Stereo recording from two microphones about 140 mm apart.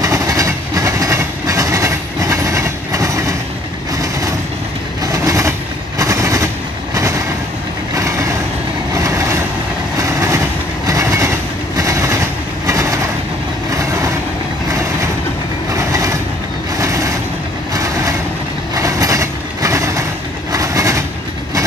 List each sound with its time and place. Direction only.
0.0 s train: 25° right (ahead or behind)
5.0 s vehicle: 25° right (ahead or behind)
9.9 s train: 20° right (ahead or behind)
14.7 s vehicle: 20° right (ahead or behind)
15.7 s train: 20° right (ahead or behind)
16.7 s vehicle: 20° right (ahead or behind)
18.8 s train: 25° right (ahead or behind)